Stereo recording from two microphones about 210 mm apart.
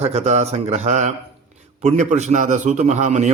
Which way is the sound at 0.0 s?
30° right (ahead or behind).